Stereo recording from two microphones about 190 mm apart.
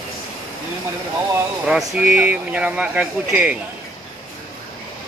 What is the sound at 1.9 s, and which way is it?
Speech, 5° right (ahead or behind).